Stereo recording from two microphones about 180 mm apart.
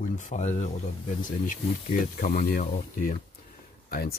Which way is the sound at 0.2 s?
40° left (ahead or behind).